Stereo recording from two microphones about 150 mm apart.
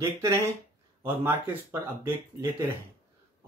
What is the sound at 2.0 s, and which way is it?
Speech, 15° right (ahead or behind).